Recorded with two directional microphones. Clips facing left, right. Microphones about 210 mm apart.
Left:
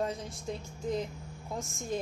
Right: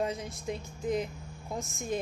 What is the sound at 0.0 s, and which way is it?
A woman's voice, 15° right (ahead or behind).